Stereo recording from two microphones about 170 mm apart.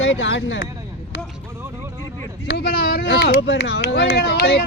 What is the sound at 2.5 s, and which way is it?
Speech, 70° left (ahead or behind).